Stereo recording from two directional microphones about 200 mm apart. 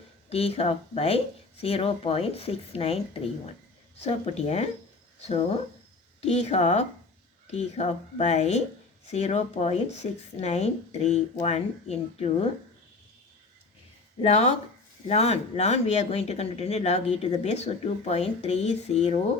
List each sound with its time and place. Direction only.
0.3 s speech: 30° left (ahead or behind)
4.0 s speech: 30° left (ahead or behind)
6.2 s speech: 35° left (ahead or behind)
14.2 s speech: 30° left (ahead or behind)